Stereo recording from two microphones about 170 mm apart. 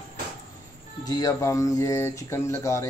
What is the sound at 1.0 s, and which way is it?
Speech, 20° left (ahead or behind).